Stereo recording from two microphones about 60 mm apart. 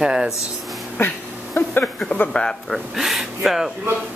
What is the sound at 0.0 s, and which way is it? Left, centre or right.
Speech, centre.